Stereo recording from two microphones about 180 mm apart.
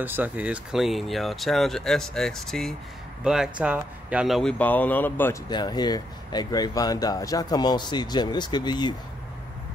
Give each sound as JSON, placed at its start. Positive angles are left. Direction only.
{"t": 0.0, "sound": "speech", "side_deg": -10}
{"t": 5.5, "sound": "speech", "side_deg": 25}